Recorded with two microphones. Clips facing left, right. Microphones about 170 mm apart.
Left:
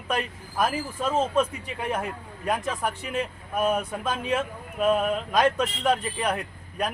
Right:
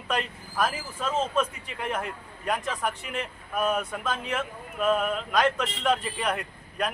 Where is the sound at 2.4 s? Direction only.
10° left (ahead or behind).